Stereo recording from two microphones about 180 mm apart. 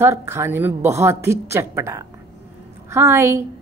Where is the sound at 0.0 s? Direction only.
15° right (ahead or behind).